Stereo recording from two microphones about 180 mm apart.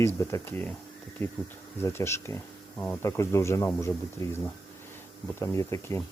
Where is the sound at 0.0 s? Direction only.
15° left (ahead or behind).